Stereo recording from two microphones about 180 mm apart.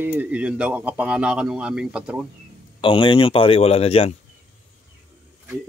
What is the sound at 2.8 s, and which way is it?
Speech, 30° left (ahead or behind).